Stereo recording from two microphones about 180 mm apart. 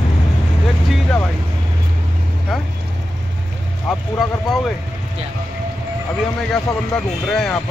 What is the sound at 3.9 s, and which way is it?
Speech, centre (ahead or behind).